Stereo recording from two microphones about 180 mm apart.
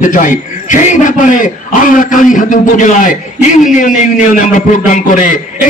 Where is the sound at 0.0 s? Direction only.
45° left (ahead or behind).